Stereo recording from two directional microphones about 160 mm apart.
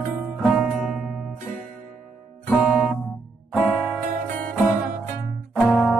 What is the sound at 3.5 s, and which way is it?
Music, 5° right (ahead or behind).